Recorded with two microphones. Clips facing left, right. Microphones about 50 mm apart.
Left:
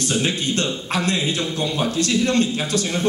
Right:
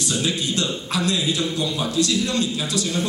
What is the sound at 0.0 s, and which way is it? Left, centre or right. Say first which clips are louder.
A man's voice: left 2 dB; left.